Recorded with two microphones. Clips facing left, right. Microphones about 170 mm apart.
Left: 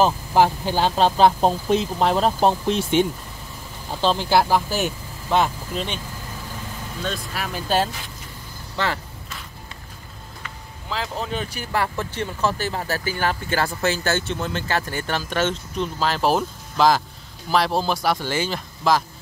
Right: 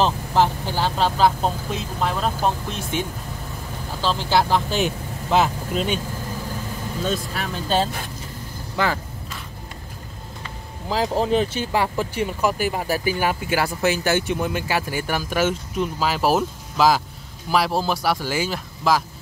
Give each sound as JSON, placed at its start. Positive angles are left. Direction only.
{"t": 0.0, "sound": "speech", "side_deg": 10}
{"t": 4.0, "sound": "speech", "side_deg": 20}
{"t": 7.0, "sound": "speech", "side_deg": 0}
{"t": 10.9, "sound": "speech", "side_deg": -35}